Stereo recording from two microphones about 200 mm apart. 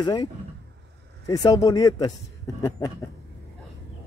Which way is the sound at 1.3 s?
15° left (ahead or behind).